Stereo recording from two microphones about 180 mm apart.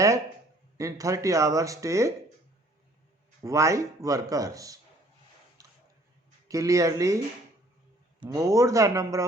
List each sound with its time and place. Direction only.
0.8 s speech: 20° right (ahead or behind)
3.4 s speech: 15° right (ahead or behind)
5.6 s a sound: 20° right (ahead or behind)
6.5 s speech: 20° right (ahead or behind)
8.3 s speech: 15° right (ahead or behind)